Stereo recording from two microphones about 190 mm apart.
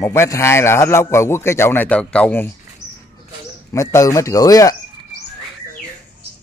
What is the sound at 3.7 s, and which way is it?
A man's voice, 15° left (ahead or behind).